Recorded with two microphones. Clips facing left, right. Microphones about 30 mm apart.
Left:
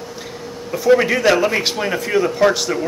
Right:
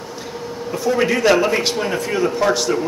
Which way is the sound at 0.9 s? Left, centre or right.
Centre.